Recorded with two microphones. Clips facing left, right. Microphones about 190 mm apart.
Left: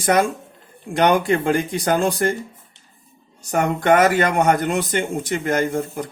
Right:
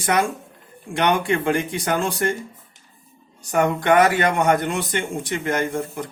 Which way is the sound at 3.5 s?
40° left (ahead or behind).